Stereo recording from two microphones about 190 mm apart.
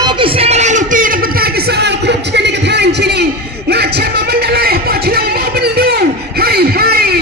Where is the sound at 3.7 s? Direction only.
60° right (ahead or behind).